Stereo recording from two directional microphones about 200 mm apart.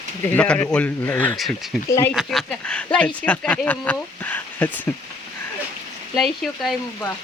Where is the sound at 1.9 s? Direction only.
15° left (ahead or behind).